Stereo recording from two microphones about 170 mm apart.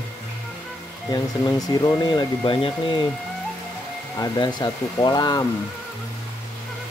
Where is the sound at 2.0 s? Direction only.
25° left (ahead or behind).